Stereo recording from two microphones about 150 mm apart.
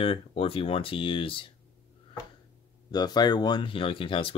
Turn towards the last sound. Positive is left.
turn(degrees=35)  # may be behind; listen again after turning